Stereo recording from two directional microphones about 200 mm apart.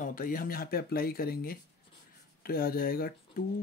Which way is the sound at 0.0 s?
45° left (ahead or behind).